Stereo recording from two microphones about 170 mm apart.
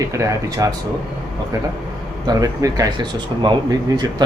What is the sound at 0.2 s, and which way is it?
Speech, 20° right (ahead or behind).